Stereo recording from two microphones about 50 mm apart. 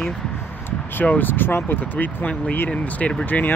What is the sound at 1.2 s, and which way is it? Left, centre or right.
Speech, left.